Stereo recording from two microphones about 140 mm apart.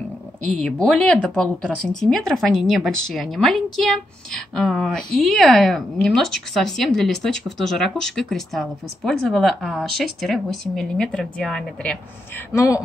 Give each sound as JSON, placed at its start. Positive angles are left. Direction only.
{"t": 0.6, "sound": "a woman's voice", "side_deg": 5}
{"t": 12.5, "sound": "a man's voice", "side_deg": 25}